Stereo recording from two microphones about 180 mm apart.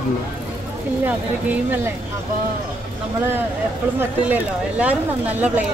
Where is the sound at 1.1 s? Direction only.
10° right (ahead or behind).